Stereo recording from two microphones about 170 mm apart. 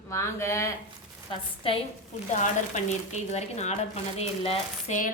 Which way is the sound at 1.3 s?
30° left (ahead or behind).